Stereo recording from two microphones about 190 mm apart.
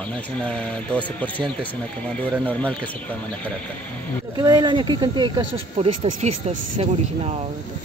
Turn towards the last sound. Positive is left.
turn(degrees=-35)  # may be behind; listen again after turning